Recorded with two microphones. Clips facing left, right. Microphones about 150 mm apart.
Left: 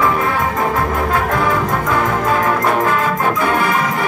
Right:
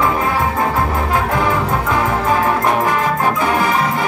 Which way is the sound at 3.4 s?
15° right (ahead or behind).